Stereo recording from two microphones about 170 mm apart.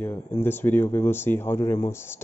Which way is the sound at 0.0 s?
10° left (ahead or behind).